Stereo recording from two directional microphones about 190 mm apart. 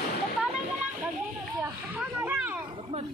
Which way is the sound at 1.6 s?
10° right (ahead or behind).